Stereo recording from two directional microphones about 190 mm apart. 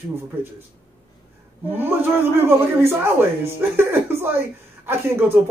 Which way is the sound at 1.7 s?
10° right (ahead or behind).